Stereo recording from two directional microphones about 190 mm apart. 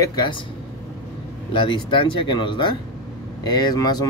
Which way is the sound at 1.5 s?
25° left (ahead or behind).